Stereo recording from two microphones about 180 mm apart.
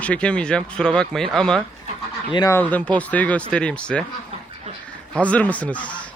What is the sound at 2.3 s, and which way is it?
Speech, 25° left (ahead or behind).